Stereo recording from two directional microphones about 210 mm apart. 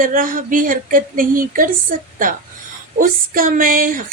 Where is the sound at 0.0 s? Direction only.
40° right (ahead or behind).